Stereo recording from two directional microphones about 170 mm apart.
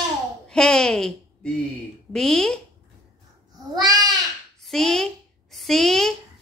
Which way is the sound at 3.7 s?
20° right (ahead or behind).